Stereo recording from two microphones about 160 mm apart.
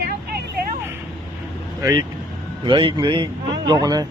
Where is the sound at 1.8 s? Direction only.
20° right (ahead or behind).